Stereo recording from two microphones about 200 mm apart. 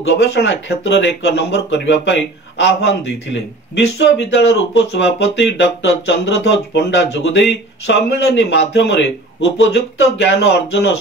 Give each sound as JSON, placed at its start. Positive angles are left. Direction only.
{"t": 0.1, "sound": "speech", "side_deg": 60}